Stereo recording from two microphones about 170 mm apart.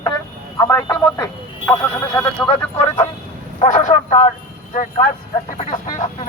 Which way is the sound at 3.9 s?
35° left (ahead or behind).